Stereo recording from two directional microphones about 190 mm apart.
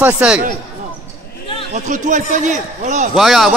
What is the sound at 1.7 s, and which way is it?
Speech, 40° right (ahead or behind).